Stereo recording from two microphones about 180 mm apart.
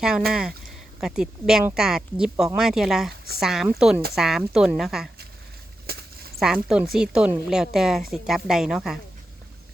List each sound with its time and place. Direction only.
0.3 s speech: 5° right (ahead or behind)
3.1 s speech: 60° right (ahead or behind)
3.4 s speech: centre (ahead or behind)
5.8 s a sound: 60° right (ahead or behind)
6.4 s speech: 5° right (ahead or behind)